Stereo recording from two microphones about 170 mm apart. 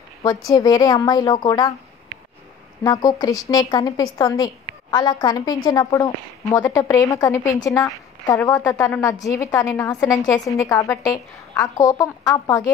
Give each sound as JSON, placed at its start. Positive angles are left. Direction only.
{"t": 0.2, "sound": "a woman's voice", "side_deg": 20}
{"t": 2.8, "sound": "a woman's voice", "side_deg": 20}